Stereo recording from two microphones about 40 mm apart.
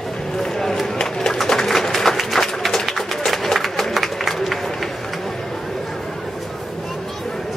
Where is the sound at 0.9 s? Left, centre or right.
Centre.